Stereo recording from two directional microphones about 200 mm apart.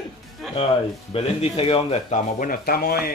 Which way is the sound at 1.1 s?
30° left (ahead or behind).